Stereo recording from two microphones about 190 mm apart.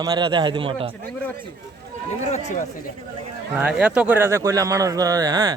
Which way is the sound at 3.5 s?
5° right (ahead or behind).